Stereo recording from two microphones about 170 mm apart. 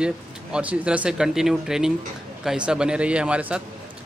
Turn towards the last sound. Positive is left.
turn(degrees=-5)  # may be behind; listen again after turning